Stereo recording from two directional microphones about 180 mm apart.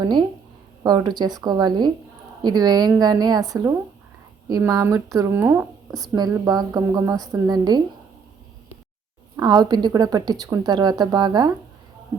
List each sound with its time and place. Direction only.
0.0 s a woman's voice: 25° right (ahead or behind)
9.3 s a woman's voice: 25° right (ahead or behind)